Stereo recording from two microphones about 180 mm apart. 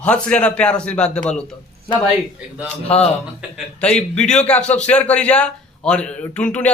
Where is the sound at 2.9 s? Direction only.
35° left (ahead or behind).